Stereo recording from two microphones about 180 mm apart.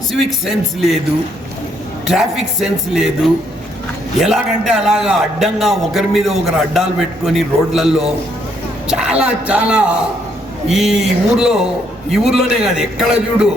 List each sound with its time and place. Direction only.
0.1 s a man's voice: centre (ahead or behind)
2.0 s a man's voice: centre (ahead or behind)
4.2 s a man's voice: centre (ahead or behind)